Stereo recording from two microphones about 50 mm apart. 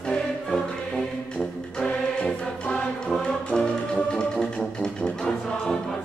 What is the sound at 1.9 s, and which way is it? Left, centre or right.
Music, left.